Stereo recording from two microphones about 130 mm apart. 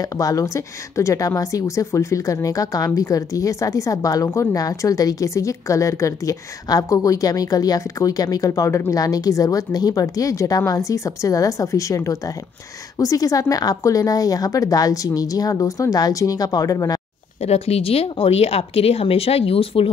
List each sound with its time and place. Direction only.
0.0 s a woman's voice: 25° left (ahead or behind)
17.4 s speech: 55° left (ahead or behind)